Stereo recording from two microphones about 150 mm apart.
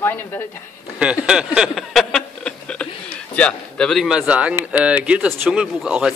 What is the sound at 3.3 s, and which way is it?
Speech, 5° left (ahead or behind).